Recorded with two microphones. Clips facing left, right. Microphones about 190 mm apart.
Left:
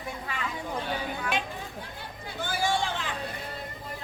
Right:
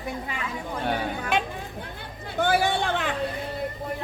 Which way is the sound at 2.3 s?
60° right (ahead or behind).